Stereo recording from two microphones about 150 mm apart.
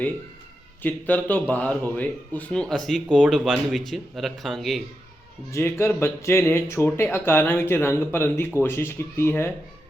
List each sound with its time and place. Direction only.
0.8 s speech: 10° left (ahead or behind)
5.5 s speech: 20° left (ahead or behind)